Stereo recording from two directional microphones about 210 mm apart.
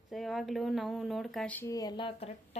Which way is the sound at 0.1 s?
Centre (ahead or behind).